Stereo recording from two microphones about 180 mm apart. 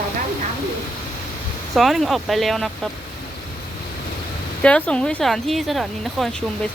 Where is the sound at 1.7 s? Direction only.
Centre (ahead or behind).